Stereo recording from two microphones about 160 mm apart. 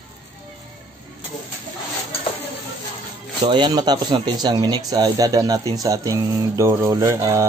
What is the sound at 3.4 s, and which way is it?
Speech, 30° right (ahead or behind).